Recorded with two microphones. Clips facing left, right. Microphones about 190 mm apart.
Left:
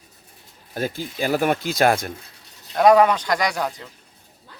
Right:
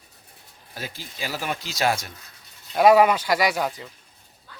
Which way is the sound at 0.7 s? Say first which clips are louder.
Left 10 dB; 50° left (ahead or behind).